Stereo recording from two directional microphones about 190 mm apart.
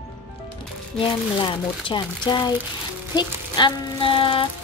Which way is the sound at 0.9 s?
5° left (ahead or behind).